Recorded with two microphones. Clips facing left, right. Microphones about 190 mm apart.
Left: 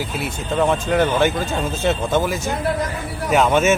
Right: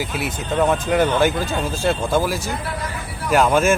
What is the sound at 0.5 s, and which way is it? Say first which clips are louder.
Speech: even; centre (ahead or behind).